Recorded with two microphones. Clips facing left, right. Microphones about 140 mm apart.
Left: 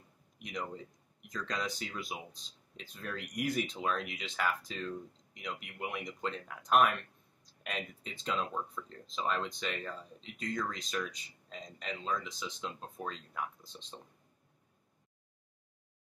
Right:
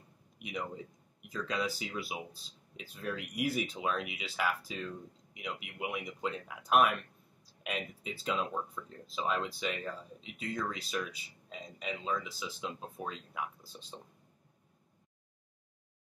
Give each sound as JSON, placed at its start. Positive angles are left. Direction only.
{"t": 0.4, "sound": "a man's voice", "side_deg": -5}